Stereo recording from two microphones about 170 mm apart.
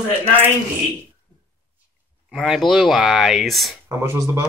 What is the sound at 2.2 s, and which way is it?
Speech, centre (ahead or behind).